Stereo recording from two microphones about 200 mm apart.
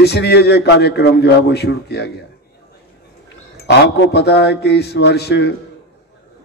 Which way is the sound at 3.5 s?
55° left (ahead or behind).